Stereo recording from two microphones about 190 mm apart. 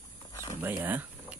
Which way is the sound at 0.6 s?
10° right (ahead or behind).